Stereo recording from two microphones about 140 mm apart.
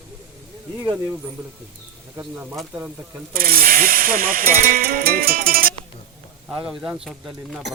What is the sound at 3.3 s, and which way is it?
Speech, 90° right.